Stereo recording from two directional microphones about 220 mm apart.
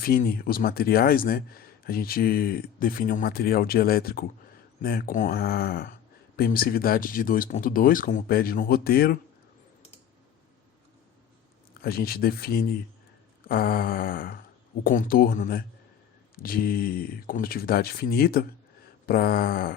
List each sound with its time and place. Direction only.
0.0 s speech: 40° left (ahead or behind)
11.8 s speech: 45° left (ahead or behind)